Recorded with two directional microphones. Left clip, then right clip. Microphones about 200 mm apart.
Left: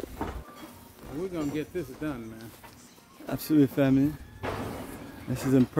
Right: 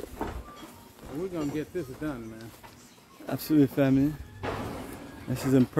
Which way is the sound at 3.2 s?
Centre (ahead or behind).